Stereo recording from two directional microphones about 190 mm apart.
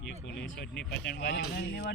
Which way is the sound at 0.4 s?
60° left (ahead or behind).